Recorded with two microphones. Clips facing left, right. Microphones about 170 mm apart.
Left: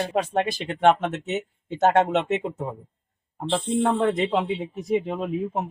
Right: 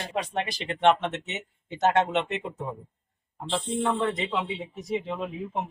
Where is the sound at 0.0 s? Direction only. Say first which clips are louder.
Left 6 dB; 50° left (ahead or behind).